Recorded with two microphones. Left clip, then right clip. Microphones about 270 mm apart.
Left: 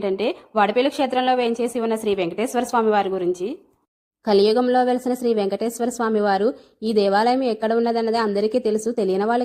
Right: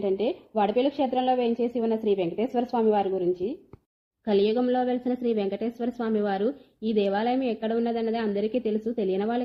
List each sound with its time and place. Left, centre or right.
0.5 s a woman's voice: centre